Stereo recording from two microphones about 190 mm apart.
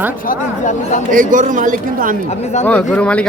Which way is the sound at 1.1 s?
45° right (ahead or behind).